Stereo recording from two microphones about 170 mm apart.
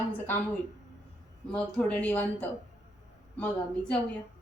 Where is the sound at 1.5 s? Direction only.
5° left (ahead or behind).